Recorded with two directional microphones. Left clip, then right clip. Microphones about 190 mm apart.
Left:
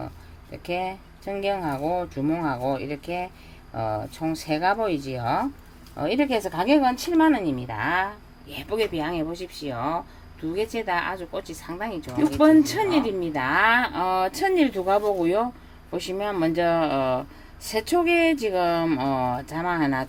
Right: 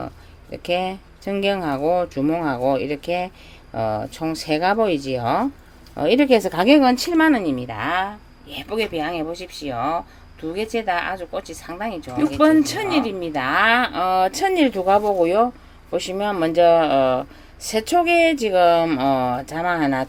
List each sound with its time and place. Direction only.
0.5 s speech: 30° right (ahead or behind)